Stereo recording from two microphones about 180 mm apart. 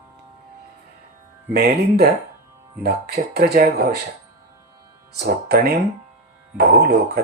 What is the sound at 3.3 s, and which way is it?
Speech, 60° right (ahead or behind).